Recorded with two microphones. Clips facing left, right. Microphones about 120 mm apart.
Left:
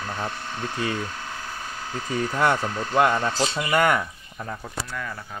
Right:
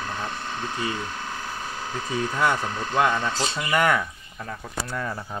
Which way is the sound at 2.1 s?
20° right (ahead or behind).